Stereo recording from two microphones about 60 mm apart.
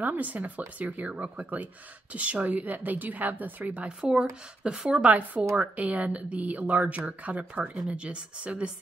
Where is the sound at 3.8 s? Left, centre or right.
Centre.